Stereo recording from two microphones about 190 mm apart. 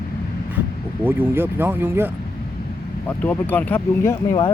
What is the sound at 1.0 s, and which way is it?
Speech, 10° right (ahead or behind).